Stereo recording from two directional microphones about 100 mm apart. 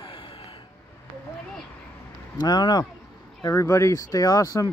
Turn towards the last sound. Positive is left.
turn(degrees=35)  # may be behind; listen again after turning